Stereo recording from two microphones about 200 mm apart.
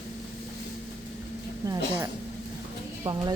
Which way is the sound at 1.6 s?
15° right (ahead or behind).